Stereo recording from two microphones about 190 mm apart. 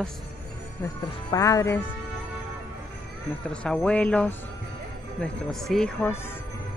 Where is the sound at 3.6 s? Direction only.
5° left (ahead or behind).